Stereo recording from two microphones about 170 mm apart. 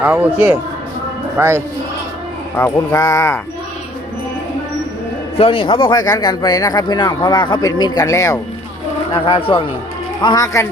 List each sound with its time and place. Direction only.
0.0 s speech: 10° right (ahead or behind)
2.6 s speech: 15° left (ahead or behind)
5.4 s speech: 30° left (ahead or behind)
9.2 s speech: 30° left (ahead or behind)